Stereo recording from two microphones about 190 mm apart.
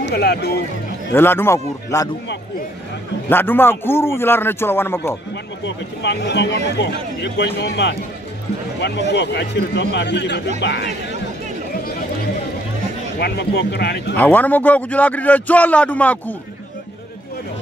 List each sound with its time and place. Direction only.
0.0 s speech: 60° left (ahead or behind)
1.1 s a man's voice: 10° left (ahead or behind)
3.3 s a man's voice: 10° left (ahead or behind)
5.7 s speech: 65° left (ahead or behind)
13.2 s speech: 60° left (ahead or behind)
14.1 s a man's voice: 10° left (ahead or behind)